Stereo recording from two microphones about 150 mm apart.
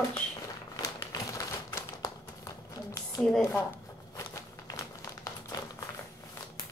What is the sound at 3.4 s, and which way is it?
Speech, 15° left (ahead or behind).